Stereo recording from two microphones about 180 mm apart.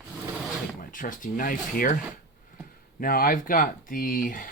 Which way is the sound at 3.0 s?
50° left (ahead or behind).